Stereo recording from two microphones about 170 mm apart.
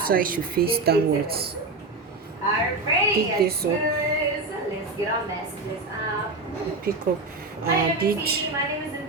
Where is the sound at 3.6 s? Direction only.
70° right (ahead or behind).